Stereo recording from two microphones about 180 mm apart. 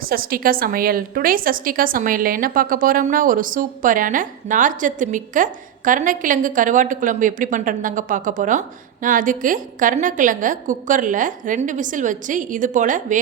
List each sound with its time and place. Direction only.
0.1 s a woman's voice: 55° right (ahead or behind)